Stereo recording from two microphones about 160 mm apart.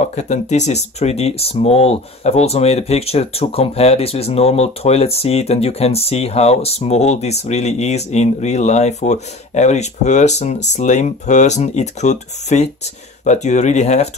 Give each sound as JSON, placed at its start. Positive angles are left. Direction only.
{"t": 0.0, "sound": "speech", "side_deg": 45}